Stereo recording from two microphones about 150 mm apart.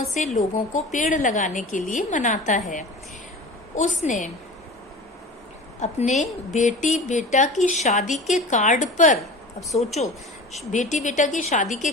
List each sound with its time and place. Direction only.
0.1 s a woman's voice: 55° left (ahead or behind)
3.8 s a woman's voice: 55° left (ahead or behind)
5.8 s a woman's voice: 50° left (ahead or behind)